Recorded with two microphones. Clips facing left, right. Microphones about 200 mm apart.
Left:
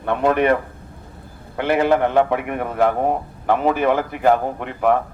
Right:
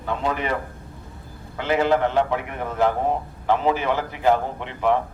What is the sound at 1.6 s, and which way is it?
A man's voice, 60° left (ahead or behind).